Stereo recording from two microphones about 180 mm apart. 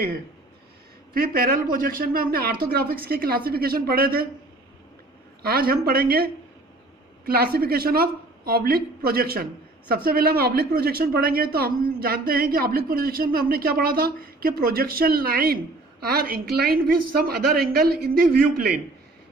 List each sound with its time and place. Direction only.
1.1 s speech: 55° right (ahead or behind)
5.4 s speech: 55° right (ahead or behind)